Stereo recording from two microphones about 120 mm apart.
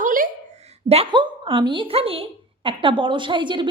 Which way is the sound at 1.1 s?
40° right (ahead or behind).